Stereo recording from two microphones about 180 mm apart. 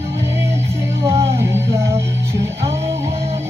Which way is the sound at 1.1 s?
15° right (ahead or behind).